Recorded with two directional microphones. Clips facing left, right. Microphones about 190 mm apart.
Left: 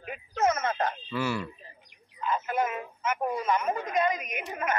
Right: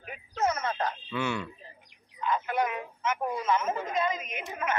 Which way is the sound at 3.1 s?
15° left (ahead or behind).